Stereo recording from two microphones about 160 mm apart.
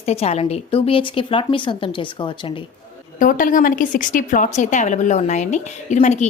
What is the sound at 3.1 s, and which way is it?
A woman's voice, 55° left (ahead or behind).